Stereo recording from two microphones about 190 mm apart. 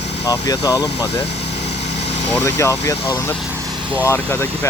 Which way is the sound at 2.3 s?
15° left (ahead or behind).